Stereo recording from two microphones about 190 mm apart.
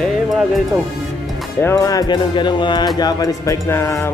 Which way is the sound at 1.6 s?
15° left (ahead or behind).